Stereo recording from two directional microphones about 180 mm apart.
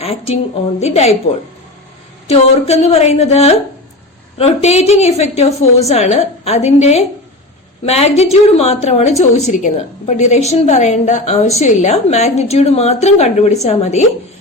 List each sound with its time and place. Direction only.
0.0 s a woman's voice: 35° left (ahead or behind)
2.2 s a woman's voice: 35° left (ahead or behind)